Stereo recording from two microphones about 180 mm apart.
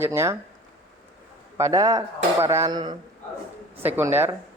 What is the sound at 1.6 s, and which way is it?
A man's voice, 20° right (ahead or behind).